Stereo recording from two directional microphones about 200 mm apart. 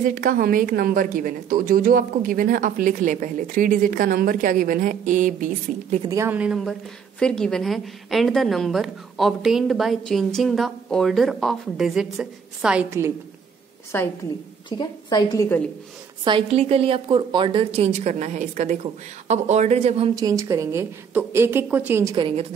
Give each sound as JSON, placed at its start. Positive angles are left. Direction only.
{"t": 0.0, "sound": "a woman's voice", "side_deg": -45}
{"t": 6.0, "sound": "a woman's voice", "side_deg": -15}
{"t": 13.9, "sound": "a woman's voice", "side_deg": 10}
{"t": 14.7, "sound": "a woman's voice", "side_deg": 20}
{"t": 16.3, "sound": "a woman's voice", "side_deg": -25}
{"t": 20.2, "sound": "a woman's voice", "side_deg": -15}
{"t": 22.1, "sound": "a woman's voice", "side_deg": -25}